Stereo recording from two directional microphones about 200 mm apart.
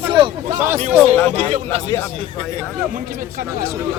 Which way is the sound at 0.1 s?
25° right (ahead or behind).